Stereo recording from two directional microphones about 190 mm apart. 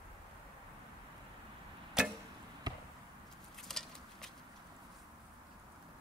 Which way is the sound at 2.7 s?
20° right (ahead or behind).